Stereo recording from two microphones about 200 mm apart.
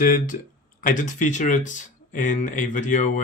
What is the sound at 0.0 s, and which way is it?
Speech, 45° left (ahead or behind).